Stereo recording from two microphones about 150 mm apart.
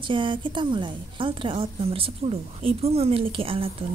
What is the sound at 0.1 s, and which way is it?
A woman's voice, 35° right (ahead or behind).